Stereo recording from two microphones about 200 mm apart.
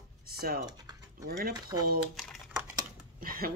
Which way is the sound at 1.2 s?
50° right (ahead or behind).